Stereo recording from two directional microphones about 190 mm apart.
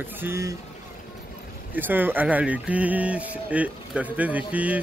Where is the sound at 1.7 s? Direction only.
10° right (ahead or behind).